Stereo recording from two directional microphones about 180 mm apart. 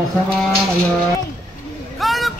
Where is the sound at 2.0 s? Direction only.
Centre (ahead or behind).